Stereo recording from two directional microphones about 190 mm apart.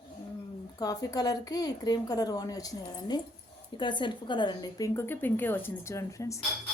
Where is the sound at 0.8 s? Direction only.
20° left (ahead or behind).